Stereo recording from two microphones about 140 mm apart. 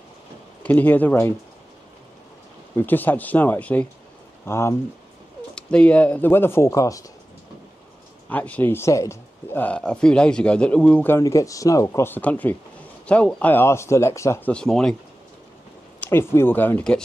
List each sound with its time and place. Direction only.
0.7 s speech: 10° left (ahead or behind)
2.7 s speech: 15° left (ahead or behind)
5.5 s speech: 5° left (ahead or behind); by 7.1 s 25° left (ahead or behind)
8.3 s speech: 10° left (ahead or behind)
11.1 s speech: 25° left (ahead or behind)
14.5 s speech: 5° left (ahead or behind)
16.0 s speech: 15° left (ahead or behind)